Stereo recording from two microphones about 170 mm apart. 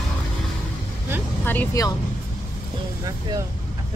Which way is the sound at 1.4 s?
15° left (ahead or behind).